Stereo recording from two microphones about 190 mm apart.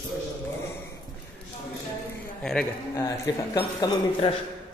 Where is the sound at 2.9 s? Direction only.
20° left (ahead or behind).